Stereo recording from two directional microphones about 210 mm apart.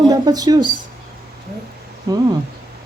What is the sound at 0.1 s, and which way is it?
Speech, 20° right (ahead or behind).